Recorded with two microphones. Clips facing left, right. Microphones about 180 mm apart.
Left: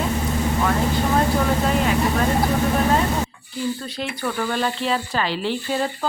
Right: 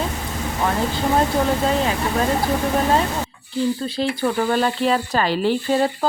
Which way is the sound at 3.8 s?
30° right (ahead or behind).